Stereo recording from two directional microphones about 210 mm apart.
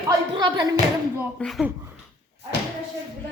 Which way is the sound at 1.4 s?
Centre (ahead or behind).